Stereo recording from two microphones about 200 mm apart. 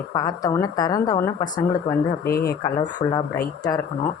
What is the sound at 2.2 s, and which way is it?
Speech, 50° left (ahead or behind).